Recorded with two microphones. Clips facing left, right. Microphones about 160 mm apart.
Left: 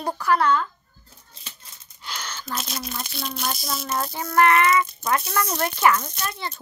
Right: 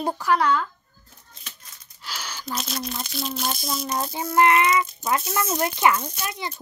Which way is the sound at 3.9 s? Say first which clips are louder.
Left 1 dB; 15° right (ahead or behind).